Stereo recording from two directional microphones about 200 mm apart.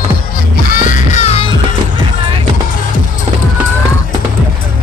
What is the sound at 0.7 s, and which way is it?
Music, 35° left (ahead or behind).